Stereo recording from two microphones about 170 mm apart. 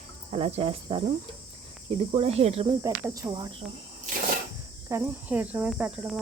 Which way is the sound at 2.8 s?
20° right (ahead or behind).